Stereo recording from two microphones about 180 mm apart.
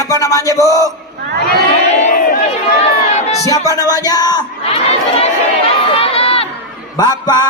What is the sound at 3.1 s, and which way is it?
Crowd, 35° left (ahead or behind).